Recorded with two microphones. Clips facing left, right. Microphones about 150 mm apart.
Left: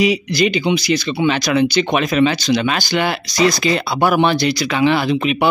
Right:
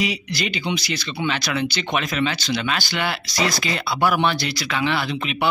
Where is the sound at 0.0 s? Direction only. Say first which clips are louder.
Left 10 dB; 15° left (ahead or behind).